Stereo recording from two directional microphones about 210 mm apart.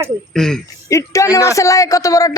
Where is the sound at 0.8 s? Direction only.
15° left (ahead or behind).